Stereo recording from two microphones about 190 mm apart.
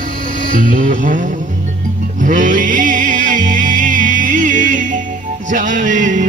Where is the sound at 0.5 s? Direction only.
45° right (ahead or behind).